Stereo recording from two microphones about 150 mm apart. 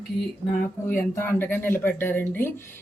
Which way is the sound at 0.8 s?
15° left (ahead or behind).